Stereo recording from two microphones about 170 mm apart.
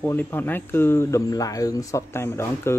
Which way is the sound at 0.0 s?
15° left (ahead or behind).